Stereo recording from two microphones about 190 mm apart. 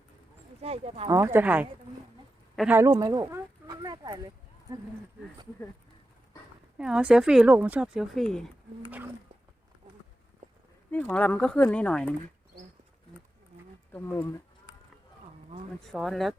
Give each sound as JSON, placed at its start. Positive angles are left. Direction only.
{"t": 0.6, "sound": "speech", "side_deg": -30}
{"t": 1.1, "sound": "speech", "side_deg": -15}
{"t": 6.7, "sound": "speech", "side_deg": -5}
{"t": 10.9, "sound": "speech", "side_deg": 5}
{"t": 13.9, "sound": "speech", "side_deg": 10}
{"t": 15.8, "sound": "speech", "side_deg": 0}